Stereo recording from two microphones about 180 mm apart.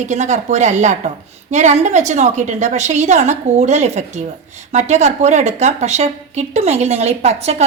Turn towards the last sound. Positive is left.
turn(degrees=-35)  # may be behind; listen again after turning